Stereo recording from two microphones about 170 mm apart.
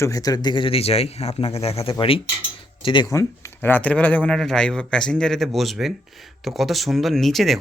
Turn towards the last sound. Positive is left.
turn(degrees=0)  # may be behind; listen again after turning